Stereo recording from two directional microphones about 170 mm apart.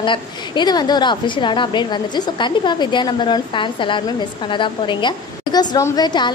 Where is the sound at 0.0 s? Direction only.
25° left (ahead or behind).